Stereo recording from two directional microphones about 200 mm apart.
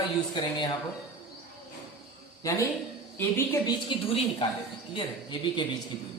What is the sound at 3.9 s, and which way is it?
Speech, 25° left (ahead or behind).